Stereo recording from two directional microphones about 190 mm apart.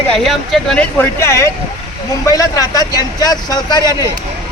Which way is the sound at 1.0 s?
15° left (ahead or behind).